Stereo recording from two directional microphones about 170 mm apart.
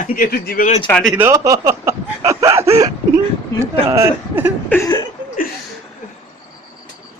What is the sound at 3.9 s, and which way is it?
Speech, 15° right (ahead or behind).